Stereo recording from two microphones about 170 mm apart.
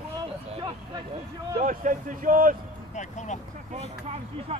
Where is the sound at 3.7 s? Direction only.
35° right (ahead or behind).